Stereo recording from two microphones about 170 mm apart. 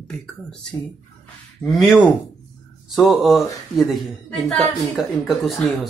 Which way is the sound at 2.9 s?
Centre (ahead or behind).